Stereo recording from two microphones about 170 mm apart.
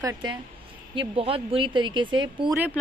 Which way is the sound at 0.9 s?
35° right (ahead or behind).